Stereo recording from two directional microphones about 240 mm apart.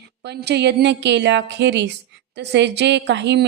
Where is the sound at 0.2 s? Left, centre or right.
Right.